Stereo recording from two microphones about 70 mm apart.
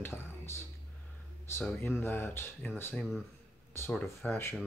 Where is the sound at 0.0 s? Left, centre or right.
Left.